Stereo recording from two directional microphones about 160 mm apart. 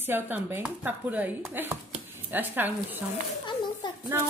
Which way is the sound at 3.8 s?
30° left (ahead or behind).